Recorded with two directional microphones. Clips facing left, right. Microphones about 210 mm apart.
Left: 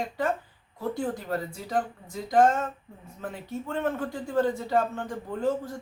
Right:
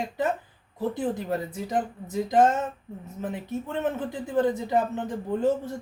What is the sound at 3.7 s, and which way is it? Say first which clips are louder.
Speech: even; 20° right (ahead or behind).